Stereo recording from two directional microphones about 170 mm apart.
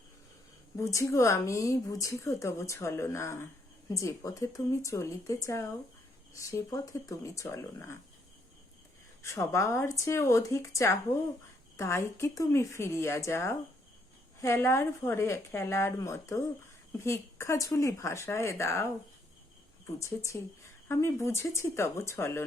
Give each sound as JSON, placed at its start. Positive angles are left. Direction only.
{"t": 0.8, "sound": "speech", "side_deg": 15}
{"t": 9.2, "sound": "speech", "side_deg": 20}
{"t": 20.0, "sound": "speech", "side_deg": 20}